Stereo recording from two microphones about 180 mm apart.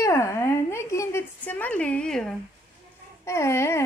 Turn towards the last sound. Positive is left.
turn(degrees=15)  # may be behind; listen again after turning